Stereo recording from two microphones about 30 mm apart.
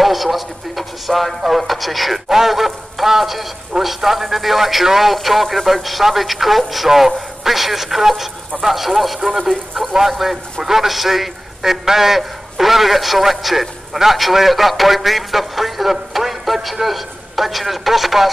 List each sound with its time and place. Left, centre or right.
0.0 s a man's voice: centre